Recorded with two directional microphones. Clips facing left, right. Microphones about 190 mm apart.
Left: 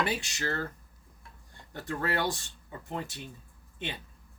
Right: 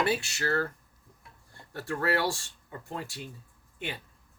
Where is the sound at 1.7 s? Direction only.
20° left (ahead or behind).